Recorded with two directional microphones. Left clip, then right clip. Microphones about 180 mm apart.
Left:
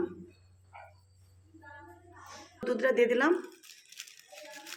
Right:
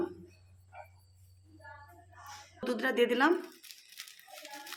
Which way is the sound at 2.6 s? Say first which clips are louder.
Left 3 dB; 35° right (ahead or behind).